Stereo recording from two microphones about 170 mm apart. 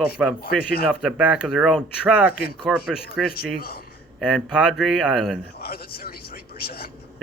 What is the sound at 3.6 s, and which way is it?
Speech, 65° left (ahead or behind).